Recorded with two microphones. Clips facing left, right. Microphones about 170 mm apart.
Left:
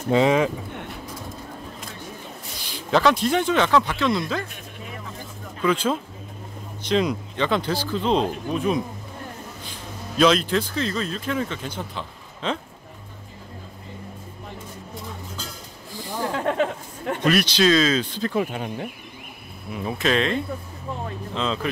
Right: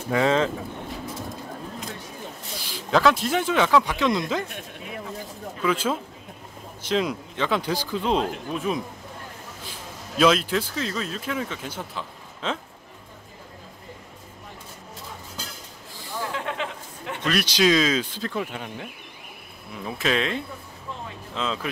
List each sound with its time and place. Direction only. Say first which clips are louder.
0.1 s speech: left 3 dB; 15° left (ahead or behind)
2.7 s speech: left 1 dB; centre (ahead or behind); by 4.5 s 20° right (ahead or behind)
5.6 s speech: left 2 dB; 5° right (ahead or behind)
16.3 s a sound: left 7 dB; 45° left (ahead or behind)
17.4 s speech: right 1 dB; 10° right (ahead or behind)
18.5 s speech: left 5 dB; 25° left (ahead or behind)
19.8 s speech: left 3 dB; centre (ahead or behind)
21.4 s speech: left 2 dB; 5° right (ahead or behind)